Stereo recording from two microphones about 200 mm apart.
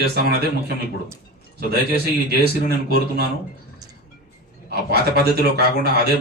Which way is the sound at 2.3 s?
50° right (ahead or behind).